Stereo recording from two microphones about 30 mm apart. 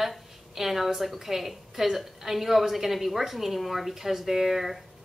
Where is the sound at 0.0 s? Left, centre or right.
Centre.